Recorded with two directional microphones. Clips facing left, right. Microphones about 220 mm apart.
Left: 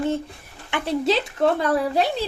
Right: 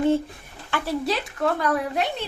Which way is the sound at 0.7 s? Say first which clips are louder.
Left 4 dB; 20° left (ahead or behind).